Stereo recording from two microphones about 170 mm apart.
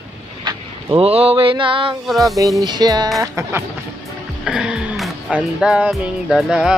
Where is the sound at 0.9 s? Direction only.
35° right (ahead or behind).